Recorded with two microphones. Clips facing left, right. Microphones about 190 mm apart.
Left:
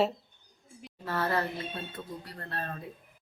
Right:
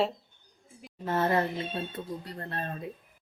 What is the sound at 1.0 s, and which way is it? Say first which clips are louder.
Speech: right 4 dB; 20° right (ahead or behind).